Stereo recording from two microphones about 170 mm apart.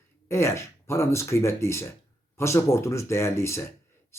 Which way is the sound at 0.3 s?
15° left (ahead or behind).